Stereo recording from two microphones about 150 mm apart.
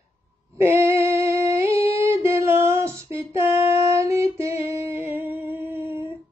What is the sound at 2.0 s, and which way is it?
Music, 15° right (ahead or behind).